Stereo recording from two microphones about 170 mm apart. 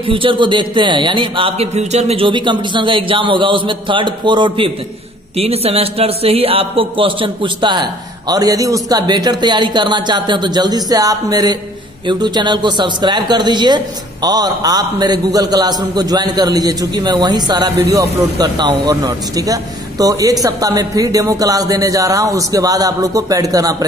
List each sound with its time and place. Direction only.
0.0 s a man's voice: 30° right (ahead or behind)